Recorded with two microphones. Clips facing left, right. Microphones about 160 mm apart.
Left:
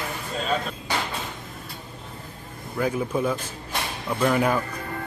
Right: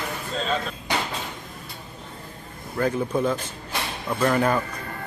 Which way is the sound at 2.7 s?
5° left (ahead or behind).